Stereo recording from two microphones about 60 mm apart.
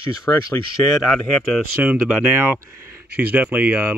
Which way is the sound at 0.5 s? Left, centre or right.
Left.